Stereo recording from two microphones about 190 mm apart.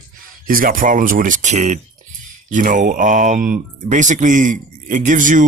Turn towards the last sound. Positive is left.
turn(degrees=-45)  # may be behind; listen again after turning